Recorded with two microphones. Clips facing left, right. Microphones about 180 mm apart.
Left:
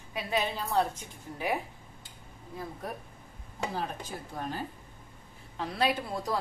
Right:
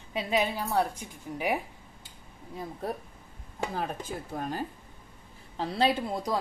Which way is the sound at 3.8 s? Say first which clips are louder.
Right 2 dB; 50° right (ahead or behind).